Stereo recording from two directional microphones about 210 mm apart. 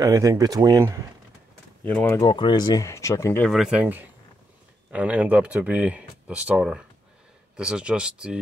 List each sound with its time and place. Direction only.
0.0 s speech: 15° right (ahead or behind)
1.8 s speech: 10° left (ahead or behind)
2.2 s speech: 20° left (ahead or behind)
3.4 s speech: centre (ahead or behind)